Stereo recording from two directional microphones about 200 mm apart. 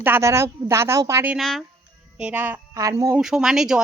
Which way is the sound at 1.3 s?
Centre (ahead or behind).